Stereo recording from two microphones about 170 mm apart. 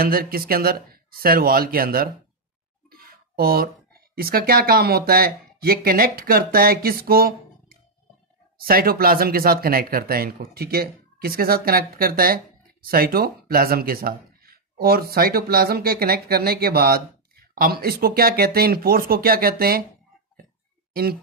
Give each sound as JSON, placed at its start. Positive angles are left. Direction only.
{"t": 0.0, "sound": "speech", "side_deg": -60}
{"t": 20.9, "sound": "speech", "side_deg": -65}